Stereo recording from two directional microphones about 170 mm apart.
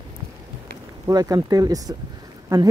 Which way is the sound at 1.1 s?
20° right (ahead or behind).